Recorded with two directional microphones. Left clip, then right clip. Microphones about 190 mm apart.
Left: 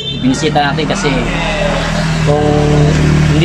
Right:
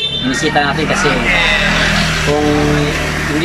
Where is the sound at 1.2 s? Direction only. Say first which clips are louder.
Right 4 dB; 40° left (ahead or behind).